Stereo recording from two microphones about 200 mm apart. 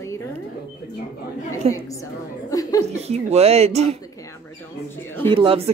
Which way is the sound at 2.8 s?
30° right (ahead or behind).